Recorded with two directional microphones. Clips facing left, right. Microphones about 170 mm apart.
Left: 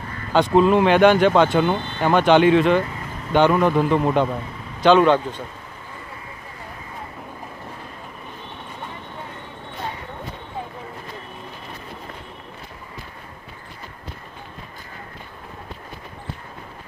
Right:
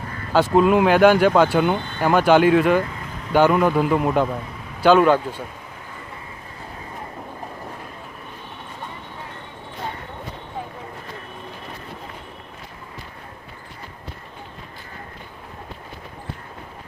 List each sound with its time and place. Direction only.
0.3 s a man's voice: 5° right (ahead or behind)